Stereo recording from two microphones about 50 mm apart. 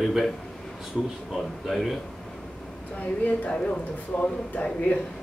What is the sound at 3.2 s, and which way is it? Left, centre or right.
Speech, left.